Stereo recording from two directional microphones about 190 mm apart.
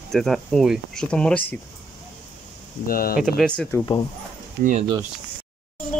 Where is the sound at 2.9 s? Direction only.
50° left (ahead or behind).